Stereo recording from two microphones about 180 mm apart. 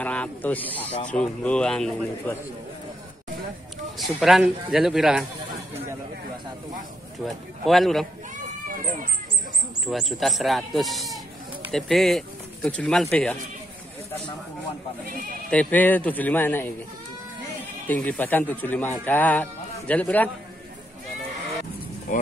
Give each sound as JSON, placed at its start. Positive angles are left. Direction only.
{"t": 0.0, "sound": "speech", "side_deg": 10}
{"t": 4.0, "sound": "speech", "side_deg": 0}
{"t": 7.2, "sound": "speech", "side_deg": 0}
{"t": 9.8, "sound": "speech", "side_deg": 0}
{"t": 15.5, "sound": "speech", "side_deg": 10}
{"t": 17.8, "sound": "speech", "side_deg": 10}
{"t": 22.1, "sound": "speech", "side_deg": 45}